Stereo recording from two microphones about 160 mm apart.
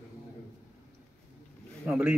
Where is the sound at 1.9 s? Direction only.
10° right (ahead or behind).